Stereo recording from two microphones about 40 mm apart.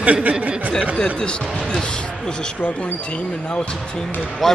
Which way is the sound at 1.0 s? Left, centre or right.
Left.